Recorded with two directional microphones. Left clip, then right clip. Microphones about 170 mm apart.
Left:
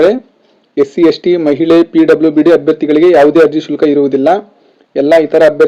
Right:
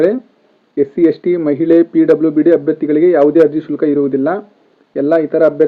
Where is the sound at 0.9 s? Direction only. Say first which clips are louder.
Left 3 dB; 20° left (ahead or behind).